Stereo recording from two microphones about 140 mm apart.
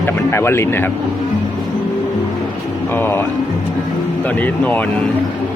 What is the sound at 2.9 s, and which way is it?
Speech, 15° left (ahead or behind).